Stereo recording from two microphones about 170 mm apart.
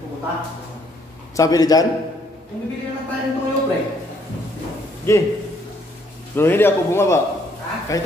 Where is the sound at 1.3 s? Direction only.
20° left (ahead or behind).